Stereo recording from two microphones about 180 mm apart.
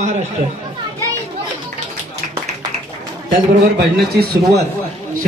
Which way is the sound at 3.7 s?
60° right (ahead or behind).